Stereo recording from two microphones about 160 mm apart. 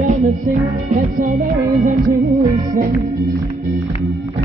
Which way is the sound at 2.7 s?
75° right (ahead or behind).